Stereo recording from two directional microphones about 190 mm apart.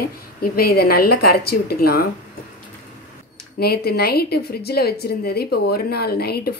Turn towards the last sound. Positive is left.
turn(degrees=55)  # may be behind; listen again after turning